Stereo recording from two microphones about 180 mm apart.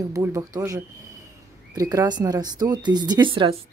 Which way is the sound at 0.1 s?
15° right (ahead or behind).